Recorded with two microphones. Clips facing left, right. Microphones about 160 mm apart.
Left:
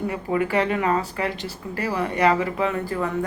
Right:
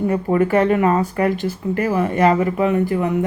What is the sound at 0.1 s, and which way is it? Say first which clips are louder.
Speech: right 7 dB; 45° right (ahead or behind).